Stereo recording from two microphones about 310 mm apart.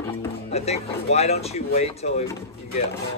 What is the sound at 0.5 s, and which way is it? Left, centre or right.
Speech, centre.